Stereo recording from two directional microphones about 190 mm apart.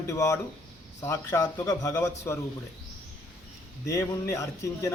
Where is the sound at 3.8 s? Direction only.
15° left (ahead or behind).